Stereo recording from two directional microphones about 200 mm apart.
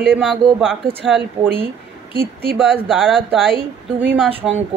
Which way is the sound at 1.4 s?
20° right (ahead or behind).